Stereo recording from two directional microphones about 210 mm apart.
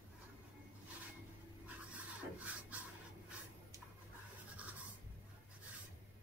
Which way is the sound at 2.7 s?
10° right (ahead or behind).